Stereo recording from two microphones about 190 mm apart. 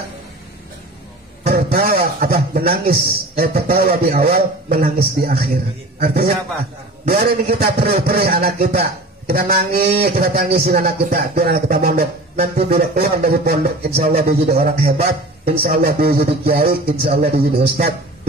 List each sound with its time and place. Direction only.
1.4 s a man's voice: 50° right (ahead or behind)